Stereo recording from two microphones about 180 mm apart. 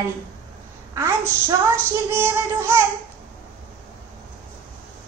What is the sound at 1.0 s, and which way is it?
A woman's voice, 15° right (ahead or behind).